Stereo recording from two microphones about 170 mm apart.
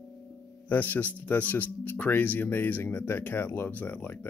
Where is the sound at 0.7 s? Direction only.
10° left (ahead or behind).